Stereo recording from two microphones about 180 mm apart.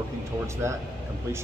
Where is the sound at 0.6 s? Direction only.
15° right (ahead or behind).